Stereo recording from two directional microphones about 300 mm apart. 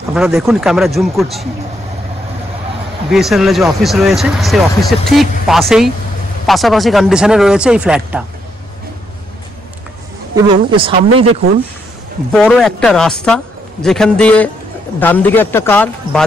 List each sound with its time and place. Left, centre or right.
0.1 s speech: centre
3.1 s speech: centre
10.3 s a woman's voice: centre
12.3 s speech: centre